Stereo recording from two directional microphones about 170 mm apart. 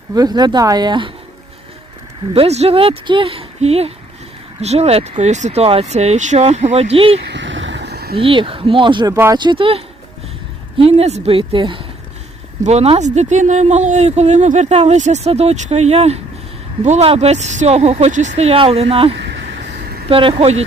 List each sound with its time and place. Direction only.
0.1 s speech: 25° right (ahead or behind)
2.3 s speech: 35° right (ahead or behind)
7.3 s a sound: 90° right; by 8.1 s 70° right (ahead or behind)
8.1 s speech: 30° right (ahead or behind)
9.1 s speech: 15° right (ahead or behind)
9.4 s speech: 30° right (ahead or behind)